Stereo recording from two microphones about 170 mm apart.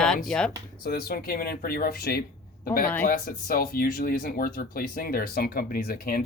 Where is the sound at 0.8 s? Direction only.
65° left (ahead or behind).